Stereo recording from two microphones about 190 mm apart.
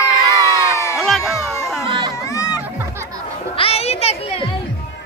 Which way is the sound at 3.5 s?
30° left (ahead or behind).